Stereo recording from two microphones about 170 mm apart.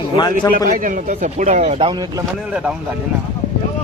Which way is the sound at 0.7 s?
50° right (ahead or behind).